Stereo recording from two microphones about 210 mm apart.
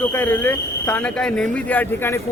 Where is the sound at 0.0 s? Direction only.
10° left (ahead or behind).